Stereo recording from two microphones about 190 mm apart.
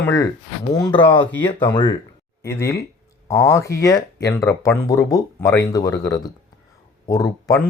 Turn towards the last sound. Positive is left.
turn(degrees=15)  # may be behind; listen again after turning